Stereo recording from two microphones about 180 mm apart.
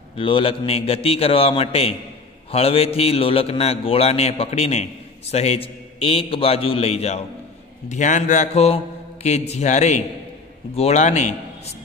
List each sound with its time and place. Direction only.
0.2 s a man's voice: 30° left (ahead or behind)